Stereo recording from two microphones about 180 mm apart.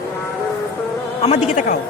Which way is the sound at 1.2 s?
40° left (ahead or behind).